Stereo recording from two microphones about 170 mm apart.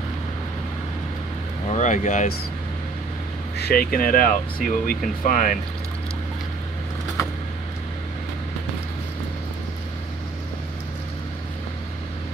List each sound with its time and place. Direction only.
1.7 s speech: 45° left (ahead or behind)
3.5 s speech: 65° left (ahead or behind)